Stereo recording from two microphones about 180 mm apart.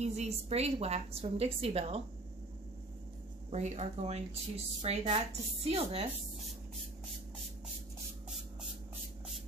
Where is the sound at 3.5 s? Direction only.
40° right (ahead or behind).